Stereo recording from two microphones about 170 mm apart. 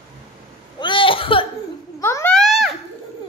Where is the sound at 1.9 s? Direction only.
15° left (ahead or behind).